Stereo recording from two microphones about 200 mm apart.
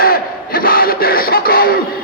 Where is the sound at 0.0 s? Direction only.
45° left (ahead or behind).